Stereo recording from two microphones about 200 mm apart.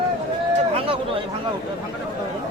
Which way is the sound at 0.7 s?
30° right (ahead or behind).